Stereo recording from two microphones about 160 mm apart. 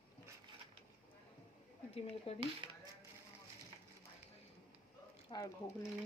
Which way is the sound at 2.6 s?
30° right (ahead or behind).